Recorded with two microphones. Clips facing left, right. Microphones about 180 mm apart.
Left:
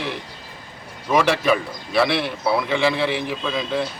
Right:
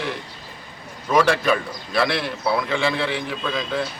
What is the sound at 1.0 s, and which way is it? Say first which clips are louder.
A man's voice: even; 5° left (ahead or behind).